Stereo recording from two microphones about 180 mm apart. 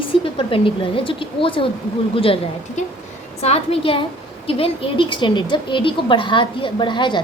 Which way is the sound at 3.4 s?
35° left (ahead or behind).